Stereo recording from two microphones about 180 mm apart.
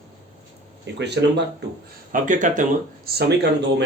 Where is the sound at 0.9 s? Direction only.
70° right (ahead or behind).